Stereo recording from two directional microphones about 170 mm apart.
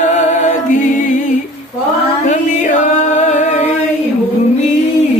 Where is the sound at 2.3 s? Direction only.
45° left (ahead or behind).